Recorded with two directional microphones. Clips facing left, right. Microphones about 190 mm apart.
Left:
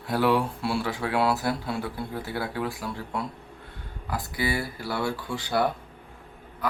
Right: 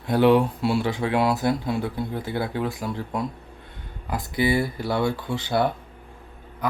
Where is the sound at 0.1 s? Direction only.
20° right (ahead or behind).